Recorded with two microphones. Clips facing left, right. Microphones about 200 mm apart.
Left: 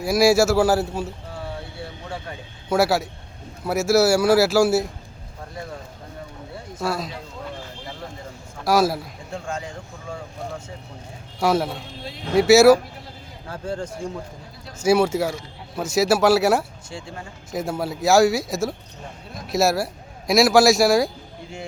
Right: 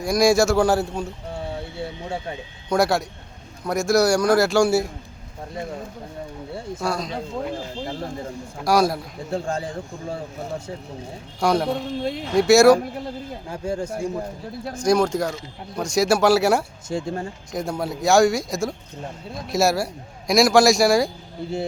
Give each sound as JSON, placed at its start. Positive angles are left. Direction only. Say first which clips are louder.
{"t": 0.0, "sound": "speech", "louder": "left 1 dB", "side_deg": 5}
{"t": 1.8, "sound": "a sound", "louder": "right 4 dB", "side_deg": -25}
{"t": 2.6, "sound": "speech", "louder": "even", "side_deg": 5}
{"t": 6.8, "sound": "speech", "louder": "left 1 dB", "side_deg": 5}
{"t": 8.6, "sound": "speech", "louder": "even", "side_deg": 0}
{"t": 9.3, "sound": "speech", "louder": "right 5 dB", "side_deg": -35}
{"t": 11.3, "sound": "speech", "louder": "right 1 dB", "side_deg": 5}
{"t": 13.5, "sound": "speech", "louder": "right 1 dB", "side_deg": -10}
{"t": 14.8, "sound": "speech", "louder": "left 1 dB", "side_deg": 5}
{"t": 16.9, "sound": "speech", "louder": "right 11 dB", "side_deg": -40}
{"t": 17.5, "sound": "speech", "louder": "left 1 dB", "side_deg": 5}